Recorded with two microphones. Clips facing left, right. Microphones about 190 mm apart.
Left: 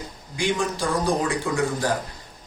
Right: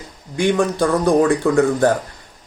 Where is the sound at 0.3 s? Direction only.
60° right (ahead or behind).